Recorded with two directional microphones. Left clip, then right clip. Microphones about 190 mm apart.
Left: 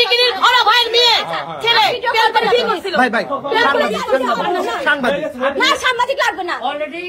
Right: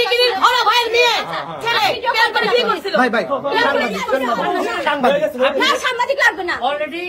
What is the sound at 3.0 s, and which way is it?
Speech, 10° left (ahead or behind).